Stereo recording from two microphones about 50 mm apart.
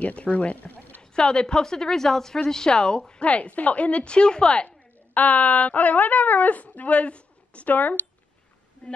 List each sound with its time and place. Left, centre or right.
0.0 s speech: left
1.1 s a woman's voice: centre
4.6 s speech: left